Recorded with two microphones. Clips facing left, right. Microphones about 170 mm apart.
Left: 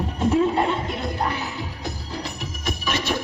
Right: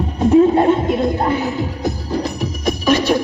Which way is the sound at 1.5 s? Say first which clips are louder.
Right 10 dB; 45° right (ahead or behind).